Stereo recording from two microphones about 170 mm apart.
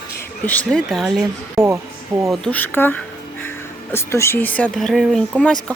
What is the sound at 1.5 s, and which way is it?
Speech, 15° right (ahead or behind).